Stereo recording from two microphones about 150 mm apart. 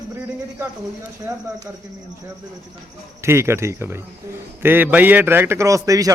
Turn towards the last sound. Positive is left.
turn(degrees=-25)  # may be behind; listen again after turning